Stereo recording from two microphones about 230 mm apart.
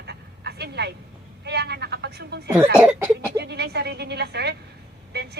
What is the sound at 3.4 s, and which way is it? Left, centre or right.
A woman's voice, right.